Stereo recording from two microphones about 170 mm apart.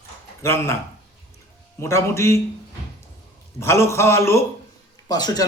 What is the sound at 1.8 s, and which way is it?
Speech, 15° left (ahead or behind).